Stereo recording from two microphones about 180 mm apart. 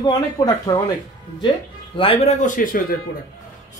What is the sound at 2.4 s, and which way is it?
Speech, 50° left (ahead or behind).